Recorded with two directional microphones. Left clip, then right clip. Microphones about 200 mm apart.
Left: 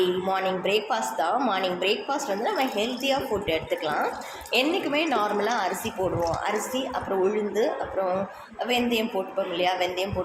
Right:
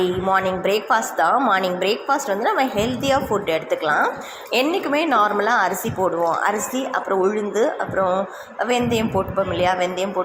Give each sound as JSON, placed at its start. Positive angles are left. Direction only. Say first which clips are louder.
{"t": 0.0, "sound": "a woman's voice", "louder": "right 5 dB", "side_deg": -20}